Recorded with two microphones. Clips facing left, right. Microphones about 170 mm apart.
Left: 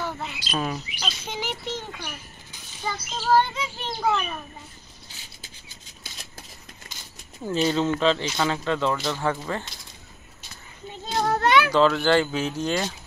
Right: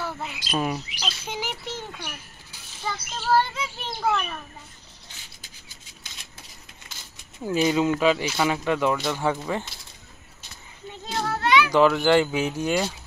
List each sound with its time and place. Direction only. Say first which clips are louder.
0.0 s bird: left 1 dB; 5° right (ahead or behind)
0.5 s speech: right 2 dB; 10° right (ahead or behind)
1.0 s chirp: left 2 dB; 5° right (ahead or behind)
2.8 s a child's voice: left 1 dB; centre (ahead or behind)
7.4 s speech: right 1 dB; 15° right (ahead or behind)
11.2 s children playing: left 1 dB; 45° left (ahead or behind)
11.7 s speech: right 1 dB; 15° right (ahead or behind)